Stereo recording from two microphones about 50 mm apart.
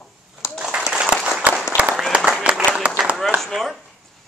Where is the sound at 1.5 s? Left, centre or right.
Right.